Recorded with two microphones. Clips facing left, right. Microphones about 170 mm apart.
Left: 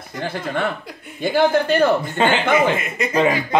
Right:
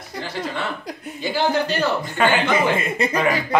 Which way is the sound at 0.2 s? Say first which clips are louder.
Left 4 dB; 55° left (ahead or behind).